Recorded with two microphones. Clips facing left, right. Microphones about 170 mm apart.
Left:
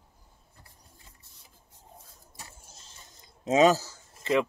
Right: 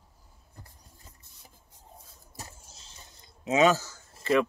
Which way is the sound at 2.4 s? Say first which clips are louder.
Right 4 dB; 40° right (ahead or behind).